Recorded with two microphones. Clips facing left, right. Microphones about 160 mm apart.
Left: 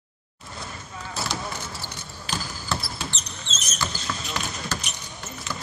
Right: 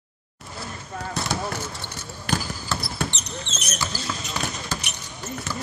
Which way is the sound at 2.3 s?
65° right (ahead or behind).